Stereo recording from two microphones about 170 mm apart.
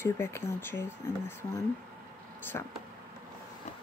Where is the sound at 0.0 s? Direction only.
15° left (ahead or behind).